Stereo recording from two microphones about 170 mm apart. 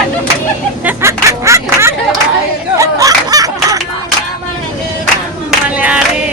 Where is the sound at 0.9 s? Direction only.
15° right (ahead or behind).